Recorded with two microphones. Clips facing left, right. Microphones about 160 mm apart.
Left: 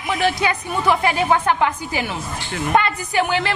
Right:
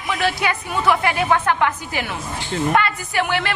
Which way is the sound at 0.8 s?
25° left (ahead or behind).